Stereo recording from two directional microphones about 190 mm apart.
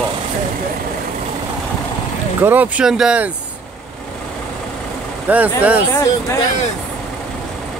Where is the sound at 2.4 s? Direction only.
10° right (ahead or behind).